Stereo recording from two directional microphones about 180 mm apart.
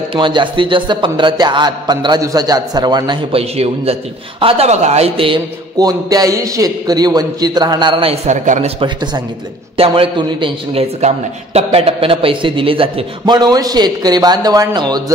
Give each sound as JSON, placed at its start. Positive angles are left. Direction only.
{"t": 0.1, "sound": "a man's voice", "side_deg": -25}